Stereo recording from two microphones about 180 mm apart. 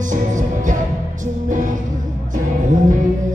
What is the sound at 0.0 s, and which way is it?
Music, 45° right (ahead or behind).